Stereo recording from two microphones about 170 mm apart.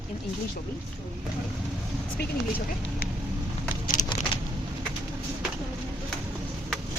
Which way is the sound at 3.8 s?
50° left (ahead or behind).